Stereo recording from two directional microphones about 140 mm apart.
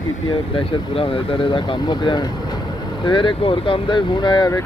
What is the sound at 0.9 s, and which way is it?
Speech, 40° left (ahead or behind).